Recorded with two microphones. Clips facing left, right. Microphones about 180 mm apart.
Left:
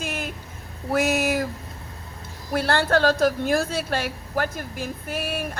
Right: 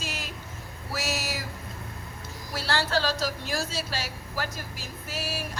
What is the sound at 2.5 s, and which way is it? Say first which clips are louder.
Speech: left 7 dB; 55° left (ahead or behind).